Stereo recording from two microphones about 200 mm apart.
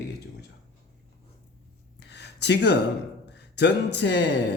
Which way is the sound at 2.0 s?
60° left (ahead or behind).